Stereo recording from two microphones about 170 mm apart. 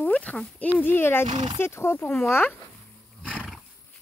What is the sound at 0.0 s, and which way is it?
Speech, 10° left (ahead or behind).